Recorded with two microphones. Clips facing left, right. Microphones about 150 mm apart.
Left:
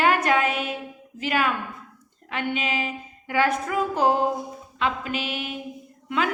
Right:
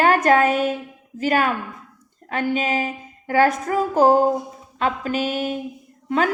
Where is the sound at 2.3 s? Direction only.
40° right (ahead or behind).